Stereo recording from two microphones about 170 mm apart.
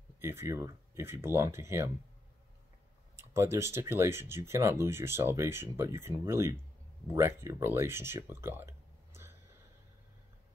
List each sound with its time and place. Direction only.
0.2 s speech: 15° right (ahead or behind)
3.2 s speech: 15° right (ahead or behind)